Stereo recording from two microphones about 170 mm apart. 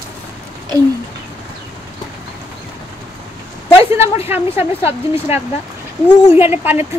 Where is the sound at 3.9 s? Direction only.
15° right (ahead or behind).